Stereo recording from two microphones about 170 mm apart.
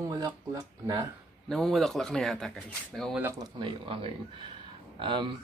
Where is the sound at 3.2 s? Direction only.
20° right (ahead or behind).